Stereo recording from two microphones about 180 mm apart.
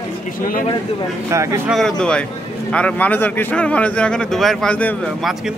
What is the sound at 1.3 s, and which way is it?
Speech, 15° right (ahead or behind).